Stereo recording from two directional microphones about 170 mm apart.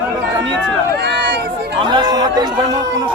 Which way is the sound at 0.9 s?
90° right.